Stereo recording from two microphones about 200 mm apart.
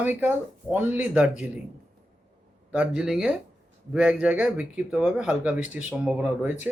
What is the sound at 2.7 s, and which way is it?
Speech, 5° right (ahead or behind).